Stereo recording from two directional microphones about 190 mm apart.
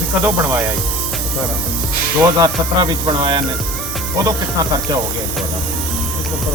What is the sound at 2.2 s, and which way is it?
Speech, 20° right (ahead or behind).